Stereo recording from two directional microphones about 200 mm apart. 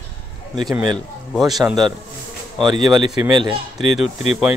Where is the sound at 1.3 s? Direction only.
Centre (ahead or behind).